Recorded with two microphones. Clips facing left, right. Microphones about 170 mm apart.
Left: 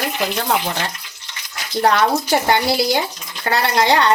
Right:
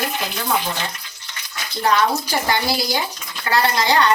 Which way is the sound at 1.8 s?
60° left (ahead or behind).